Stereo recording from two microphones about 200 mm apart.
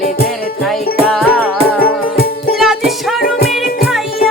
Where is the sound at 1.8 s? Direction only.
50° left (ahead or behind).